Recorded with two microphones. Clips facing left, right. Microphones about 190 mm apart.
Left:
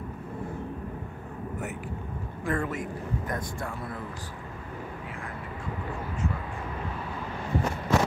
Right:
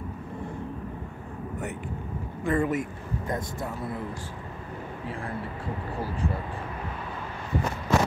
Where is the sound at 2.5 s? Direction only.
Centre (ahead or behind).